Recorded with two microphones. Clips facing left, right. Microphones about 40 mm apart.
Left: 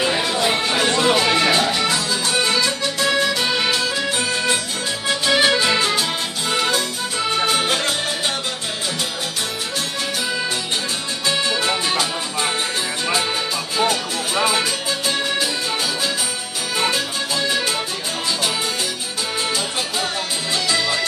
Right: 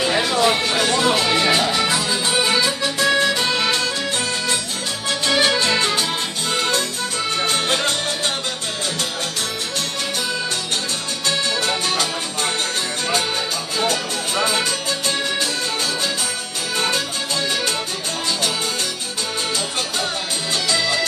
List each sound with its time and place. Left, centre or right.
0.0 s music: centre
5.2 s music: centre
11.2 s music: centre
13.7 s music: centre
16.7 s music: centre
20.7 s music: centre